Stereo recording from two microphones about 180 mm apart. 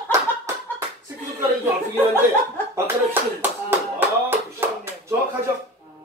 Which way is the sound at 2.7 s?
10° right (ahead or behind).